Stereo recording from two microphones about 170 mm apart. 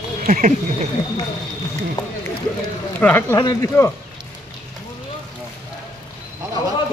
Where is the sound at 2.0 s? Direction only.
25° left (ahead or behind).